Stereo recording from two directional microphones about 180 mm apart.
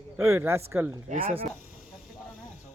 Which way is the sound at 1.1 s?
30° right (ahead or behind).